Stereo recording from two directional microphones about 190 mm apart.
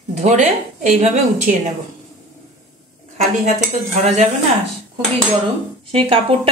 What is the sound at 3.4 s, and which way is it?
Speech, 35° right (ahead or behind).